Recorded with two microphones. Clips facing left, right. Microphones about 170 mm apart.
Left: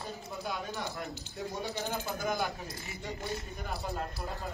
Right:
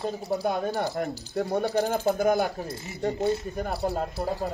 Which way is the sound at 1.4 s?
65° right (ahead or behind).